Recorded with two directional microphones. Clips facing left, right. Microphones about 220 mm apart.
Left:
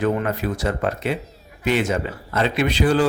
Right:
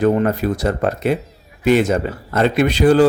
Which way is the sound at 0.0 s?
40° right (ahead or behind).